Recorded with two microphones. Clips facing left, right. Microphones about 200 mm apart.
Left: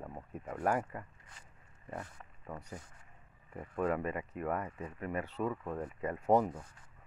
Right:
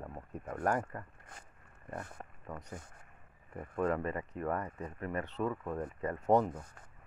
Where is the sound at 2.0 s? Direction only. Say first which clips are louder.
Right 2 dB; 50° right (ahead or behind).